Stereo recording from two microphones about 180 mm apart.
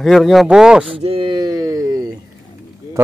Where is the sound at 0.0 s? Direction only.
Centre (ahead or behind).